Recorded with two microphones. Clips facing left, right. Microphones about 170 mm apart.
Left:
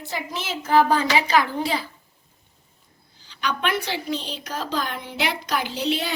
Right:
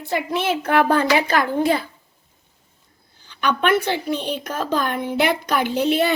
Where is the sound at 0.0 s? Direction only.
60° right (ahead or behind).